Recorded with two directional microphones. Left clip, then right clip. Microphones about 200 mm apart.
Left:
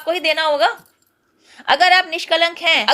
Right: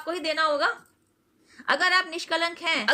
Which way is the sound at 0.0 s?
20° right (ahead or behind).